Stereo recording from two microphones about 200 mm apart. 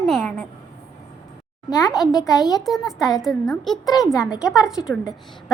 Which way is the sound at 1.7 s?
Centre (ahead or behind).